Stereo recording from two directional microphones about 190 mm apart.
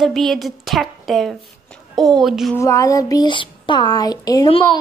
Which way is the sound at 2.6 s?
15° left (ahead or behind).